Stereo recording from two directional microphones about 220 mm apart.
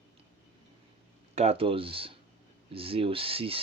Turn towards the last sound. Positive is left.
turn(degrees=-25)  # may be behind; listen again after turning